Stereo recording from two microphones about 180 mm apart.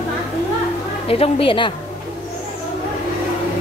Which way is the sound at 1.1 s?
30° left (ahead or behind).